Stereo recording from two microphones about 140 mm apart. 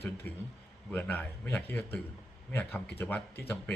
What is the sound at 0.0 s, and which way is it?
Speech, 15° left (ahead or behind).